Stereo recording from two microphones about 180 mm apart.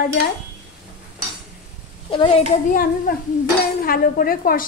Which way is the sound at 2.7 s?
55° left (ahead or behind).